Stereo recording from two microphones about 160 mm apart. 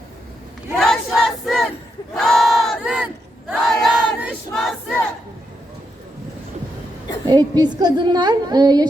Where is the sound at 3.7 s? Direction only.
Centre (ahead or behind).